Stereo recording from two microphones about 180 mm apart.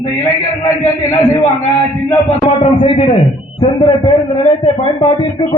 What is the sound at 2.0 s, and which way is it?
A man's voice, 30° left (ahead or behind).